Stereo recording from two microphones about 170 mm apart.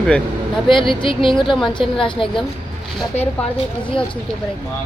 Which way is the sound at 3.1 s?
40° left (ahead or behind).